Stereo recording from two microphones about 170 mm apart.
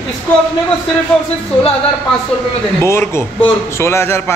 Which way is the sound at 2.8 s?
15° left (ahead or behind).